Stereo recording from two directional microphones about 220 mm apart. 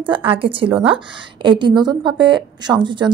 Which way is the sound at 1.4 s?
20° right (ahead or behind).